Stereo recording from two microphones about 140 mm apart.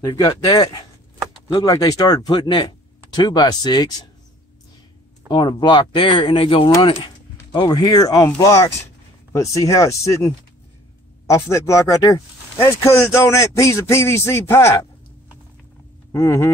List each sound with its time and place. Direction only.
0.0 s speech: 25° left (ahead or behind)
5.3 s speech: 30° left (ahead or behind)
16.1 s speech: 20° left (ahead or behind)